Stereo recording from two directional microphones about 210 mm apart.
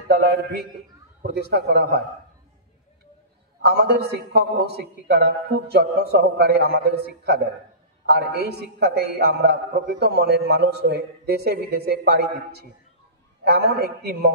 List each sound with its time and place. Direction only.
1.2 s a man's voice: 50° right (ahead or behind)
3.6 s a man's voice: 50° right (ahead or behind)